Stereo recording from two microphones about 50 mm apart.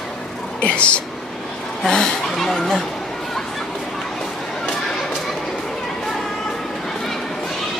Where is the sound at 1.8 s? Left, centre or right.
Centre.